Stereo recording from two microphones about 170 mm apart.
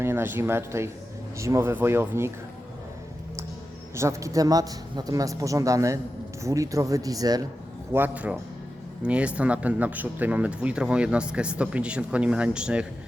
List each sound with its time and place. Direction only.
0.0 s speech: 15° right (ahead or behind)
3.9 s a man's voice: 15° right (ahead or behind)
7.9 s speech: 10° right (ahead or behind)